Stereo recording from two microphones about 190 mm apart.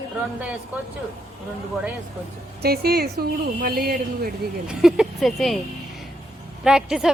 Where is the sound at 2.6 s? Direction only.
55° right (ahead or behind).